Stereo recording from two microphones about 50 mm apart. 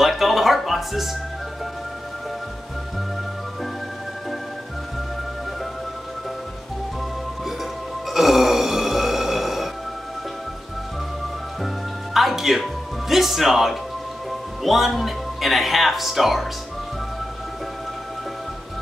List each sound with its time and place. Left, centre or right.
0.0 s music: centre
8.1 s music: centre
11.6 s music: centre
14.6 s speech: centre